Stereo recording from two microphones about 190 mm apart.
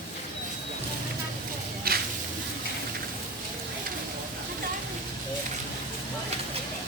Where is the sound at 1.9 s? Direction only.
50° right (ahead or behind).